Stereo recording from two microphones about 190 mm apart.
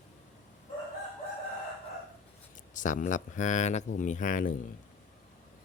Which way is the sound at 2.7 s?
40° left (ahead or behind).